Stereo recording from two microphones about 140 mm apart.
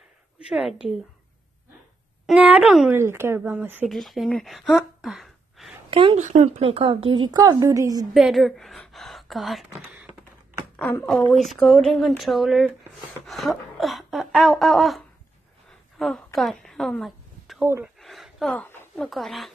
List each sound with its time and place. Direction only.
0.5 s a woman's voice: 5° right (ahead or behind)
2.2 s speech: 5° right (ahead or behind)
2.9 s speech: 15° right (ahead or behind)
3.9 s speech: centre (ahead or behind)
5.9 s a sound: 35° right (ahead or behind)
6.1 s a woman's voice: 55° right (ahead or behind); by 8.1 s 25° right (ahead or behind)
8.1 s a woman's voice: centre (ahead or behind)
9.9 s a sound: 15° right (ahead or behind)
10.8 s a woman's voice: 15° left (ahead or behind)
11.3 s a woman's voice: centre (ahead or behind)
16.3 s a sound: centre (ahead or behind)
18.5 s speech: 15° left (ahead or behind)
18.9 s a woman's voice: centre (ahead or behind)